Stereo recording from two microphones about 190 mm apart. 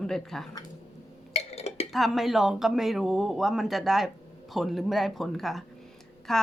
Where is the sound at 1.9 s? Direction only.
Centre (ahead or behind).